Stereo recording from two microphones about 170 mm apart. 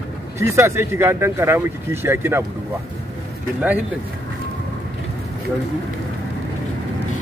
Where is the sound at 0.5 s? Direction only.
15° right (ahead or behind).